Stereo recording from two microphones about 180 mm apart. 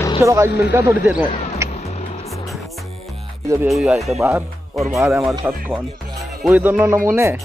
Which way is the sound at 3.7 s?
Centre (ahead or behind).